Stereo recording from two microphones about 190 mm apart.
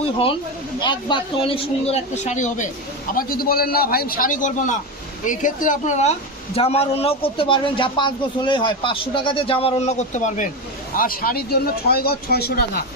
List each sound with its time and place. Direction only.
0.8 s a man's voice: 25° left (ahead or behind); by 2.6 s 40° left (ahead or behind)
3.2 s a man's voice: 50° left (ahead or behind)